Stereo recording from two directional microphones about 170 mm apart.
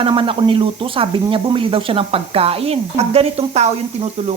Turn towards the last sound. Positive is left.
turn(degrees=-40)  # may be behind; listen again after turning